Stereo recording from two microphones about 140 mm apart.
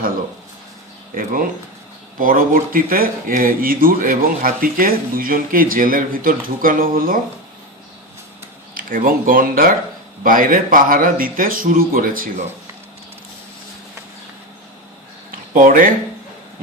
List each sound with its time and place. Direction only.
1.1 s speech: 80° right
8.7 s speech: 85° right
15.5 s speech: 75° right (ahead or behind)